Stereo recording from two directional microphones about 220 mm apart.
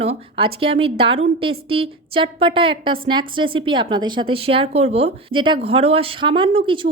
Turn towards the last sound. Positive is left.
turn(degrees=-20)  # may be behind; listen again after turning